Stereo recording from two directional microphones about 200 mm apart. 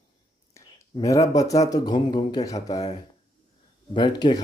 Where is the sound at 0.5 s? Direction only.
15° left (ahead or behind).